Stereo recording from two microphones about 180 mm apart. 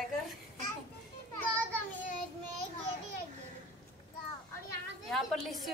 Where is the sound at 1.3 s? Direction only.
10° left (ahead or behind).